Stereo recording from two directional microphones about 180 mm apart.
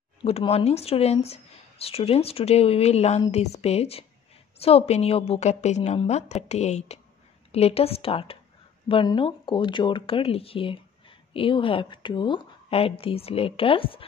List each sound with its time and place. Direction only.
0.2 s speech: 35° left (ahead or behind)